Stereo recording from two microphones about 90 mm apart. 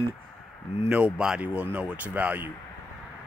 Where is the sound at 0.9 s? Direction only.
10° right (ahead or behind).